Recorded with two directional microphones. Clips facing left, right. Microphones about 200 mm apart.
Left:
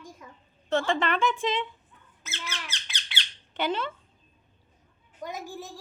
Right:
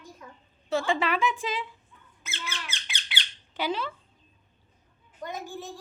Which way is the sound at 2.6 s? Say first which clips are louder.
Right 1 dB; centre (ahead or behind).